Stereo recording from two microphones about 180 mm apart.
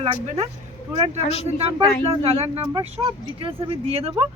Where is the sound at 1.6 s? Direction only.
35° right (ahead or behind).